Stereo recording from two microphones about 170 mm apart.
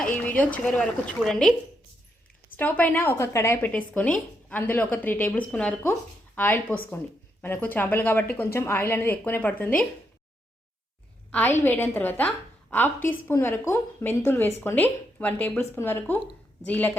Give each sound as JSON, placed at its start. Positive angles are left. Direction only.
{"t": 0.0, "sound": "speech", "side_deg": 10}
{"t": 2.6, "sound": "a woman's voice", "side_deg": 10}
{"t": 11.3, "sound": "a woman's voice", "side_deg": 10}